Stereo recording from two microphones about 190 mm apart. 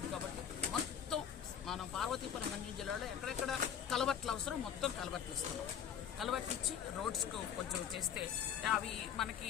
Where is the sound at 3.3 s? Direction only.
Centre (ahead or behind).